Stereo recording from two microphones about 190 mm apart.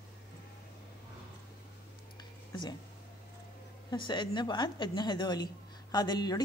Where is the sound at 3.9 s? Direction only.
25° left (ahead or behind).